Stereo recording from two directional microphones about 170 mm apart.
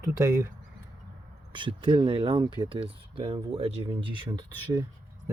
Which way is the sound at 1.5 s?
30° right (ahead or behind).